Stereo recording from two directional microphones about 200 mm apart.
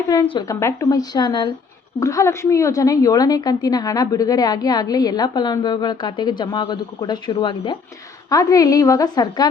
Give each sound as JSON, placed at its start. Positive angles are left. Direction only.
{"t": 0.1, "sound": "a woman's voice", "side_deg": 20}